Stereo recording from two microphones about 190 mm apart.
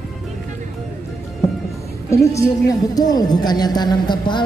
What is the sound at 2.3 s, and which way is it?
A woman's voice, 15° left (ahead or behind).